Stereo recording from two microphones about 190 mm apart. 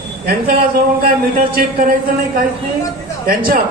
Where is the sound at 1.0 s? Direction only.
50° right (ahead or behind).